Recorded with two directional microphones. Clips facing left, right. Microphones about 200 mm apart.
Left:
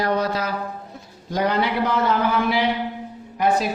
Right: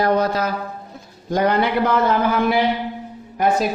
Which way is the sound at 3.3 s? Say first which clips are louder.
Right 2 dB; 45° right (ahead or behind).